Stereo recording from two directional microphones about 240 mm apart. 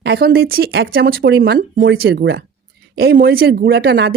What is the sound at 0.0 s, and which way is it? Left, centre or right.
Speech, right.